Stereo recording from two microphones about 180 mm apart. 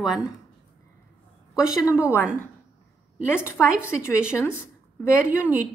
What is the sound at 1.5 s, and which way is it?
Speech, 15° left (ahead or behind).